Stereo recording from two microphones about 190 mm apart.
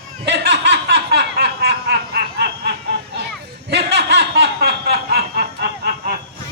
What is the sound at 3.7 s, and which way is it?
Snicker, 60° right (ahead or behind).